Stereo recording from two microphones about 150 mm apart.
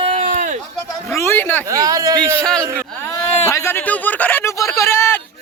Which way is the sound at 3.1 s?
20° left (ahead or behind).